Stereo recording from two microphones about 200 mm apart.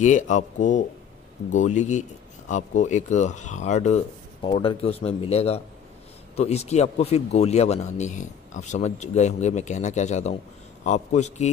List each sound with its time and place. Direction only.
0.0 s speech: 40° left (ahead or behind)